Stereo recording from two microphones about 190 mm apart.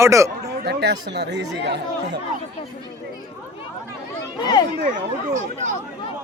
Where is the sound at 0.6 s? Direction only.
60° right (ahead or behind).